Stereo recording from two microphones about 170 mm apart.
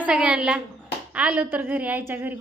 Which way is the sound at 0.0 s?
5° right (ahead or behind).